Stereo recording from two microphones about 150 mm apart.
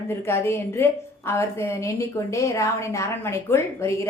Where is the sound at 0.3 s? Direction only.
15° left (ahead or behind).